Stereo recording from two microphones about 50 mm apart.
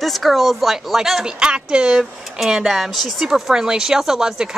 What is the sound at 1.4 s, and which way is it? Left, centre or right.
Speech, centre.